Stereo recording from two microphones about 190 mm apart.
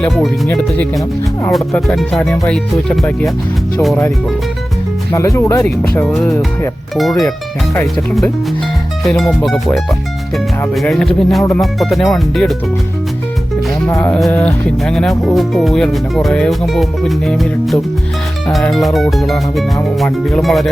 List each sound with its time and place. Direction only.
0.0 s speech: 10° left (ahead or behind)
5.1 s speech: 15° left (ahead or behind)
9.0 s speech: centre (ahead or behind)
10.8 s speech: 5° left (ahead or behind)
13.8 s speech: 15° left (ahead or behind)